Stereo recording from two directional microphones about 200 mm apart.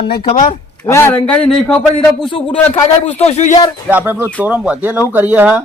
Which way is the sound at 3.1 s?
30° left (ahead or behind).